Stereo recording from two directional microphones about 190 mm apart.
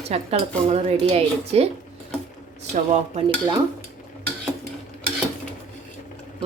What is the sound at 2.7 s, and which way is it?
Speech, 35° right (ahead or behind).